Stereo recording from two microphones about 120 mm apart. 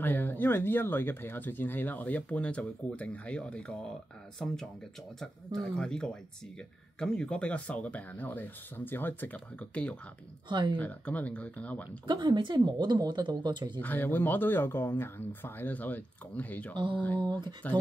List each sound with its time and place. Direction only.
0.0 s speech: 15° left (ahead or behind)
10.5 s speech: 40° right (ahead or behind)
10.8 s speech: 10° left (ahead or behind)
12.1 s speech: 40° right (ahead or behind)
13.7 s speech: 15° left (ahead or behind)
16.7 s mantra: 45° right (ahead or behind)
17.2 s speech: 35° right (ahead or behind)